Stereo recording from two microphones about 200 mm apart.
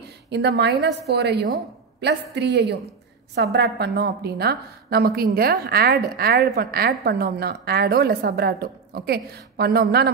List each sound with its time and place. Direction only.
0.3 s a woman's voice: 55° right (ahead or behind)